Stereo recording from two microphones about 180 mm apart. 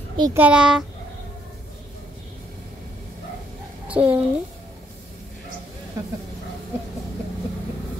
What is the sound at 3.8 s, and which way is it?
Speech, 5° right (ahead or behind).